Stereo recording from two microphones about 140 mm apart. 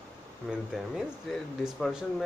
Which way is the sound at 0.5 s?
5° right (ahead or behind).